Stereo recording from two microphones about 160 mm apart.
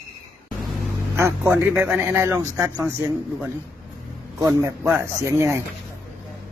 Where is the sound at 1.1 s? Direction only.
15° right (ahead or behind).